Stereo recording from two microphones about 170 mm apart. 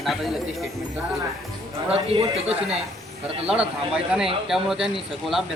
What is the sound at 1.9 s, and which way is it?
Speech, 35° right (ahead or behind).